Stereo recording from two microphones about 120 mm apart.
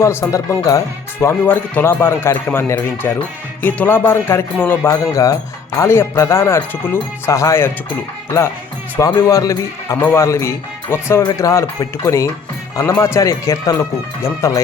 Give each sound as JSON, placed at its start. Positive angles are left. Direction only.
{"t": 0.0, "sound": "speech", "side_deg": 20}
{"t": 3.6, "sound": "music", "side_deg": 15}
{"t": 4.5, "sound": "speech", "side_deg": 15}
{"t": 9.0, "sound": "speech", "side_deg": 30}
{"t": 11.2, "sound": "speech", "side_deg": 30}